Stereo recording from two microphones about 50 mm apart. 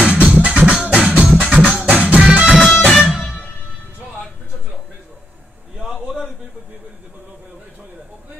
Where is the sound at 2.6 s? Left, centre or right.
Centre.